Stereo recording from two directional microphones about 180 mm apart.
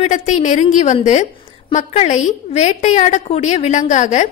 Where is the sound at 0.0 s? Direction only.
40° left (ahead or behind).